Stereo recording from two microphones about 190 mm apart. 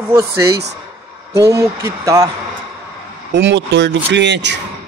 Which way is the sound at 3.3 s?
65° right (ahead or behind).